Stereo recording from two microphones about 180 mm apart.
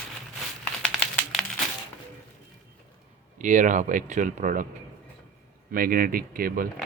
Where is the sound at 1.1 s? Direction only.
5° left (ahead or behind).